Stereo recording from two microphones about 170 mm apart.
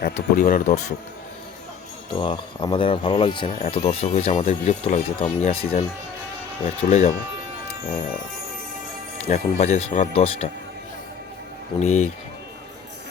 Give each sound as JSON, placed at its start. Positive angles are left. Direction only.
{"t": 0.0, "sound": "speech", "side_deg": 55}
{"t": 2.1, "sound": "speech", "side_deg": 30}
{"t": 6.8, "sound": "speech", "side_deg": 40}
{"t": 9.2, "sound": "speech", "side_deg": 40}
{"t": 11.8, "sound": "speech", "side_deg": 40}